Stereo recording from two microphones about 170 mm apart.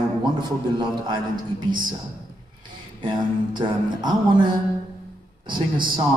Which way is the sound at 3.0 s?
25° right (ahead or behind).